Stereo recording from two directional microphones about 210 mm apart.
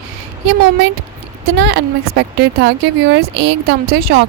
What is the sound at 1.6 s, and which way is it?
A woman's voice, 55° right (ahead or behind).